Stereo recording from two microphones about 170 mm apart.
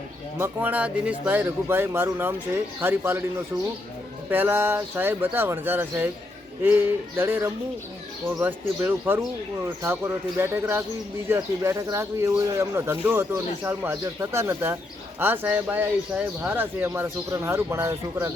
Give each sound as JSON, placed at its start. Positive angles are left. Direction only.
{"t": 0.3, "sound": "speech", "side_deg": -10}
{"t": 4.3, "sound": "speech", "side_deg": -10}